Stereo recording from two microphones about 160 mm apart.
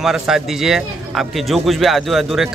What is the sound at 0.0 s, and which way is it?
Speech, centre (ahead or behind).